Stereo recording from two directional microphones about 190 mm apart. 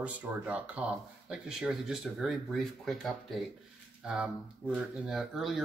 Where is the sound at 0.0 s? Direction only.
5° right (ahead or behind).